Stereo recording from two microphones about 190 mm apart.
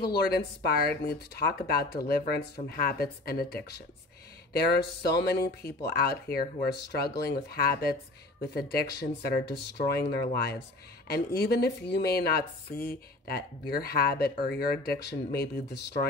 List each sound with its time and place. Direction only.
0.0 s speech: 55° left (ahead or behind)